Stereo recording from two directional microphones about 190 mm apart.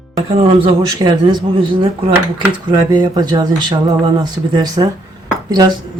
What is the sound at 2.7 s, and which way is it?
Speech, 20° right (ahead or behind).